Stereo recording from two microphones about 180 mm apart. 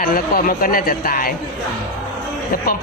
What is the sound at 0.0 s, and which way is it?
A man's voice, 50° left (ahead or behind).